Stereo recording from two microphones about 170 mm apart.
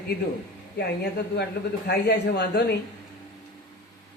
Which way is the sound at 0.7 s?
80° left.